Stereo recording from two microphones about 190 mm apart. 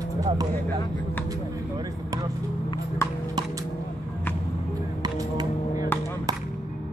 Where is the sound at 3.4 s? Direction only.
20° right (ahead or behind).